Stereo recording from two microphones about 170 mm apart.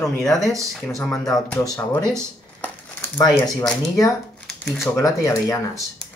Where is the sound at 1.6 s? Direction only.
20° left (ahead or behind).